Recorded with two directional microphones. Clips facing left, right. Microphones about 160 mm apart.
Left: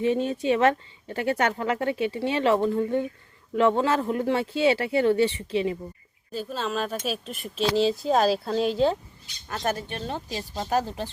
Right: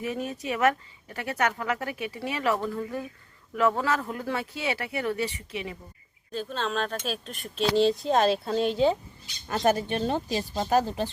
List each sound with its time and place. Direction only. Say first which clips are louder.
0.0 s speech: left 8 dB; 30° left (ahead or behind)
6.3 s speech: left 1 dB; 5° left (ahead or behind); by 11.0 s 10° right (ahead or behind)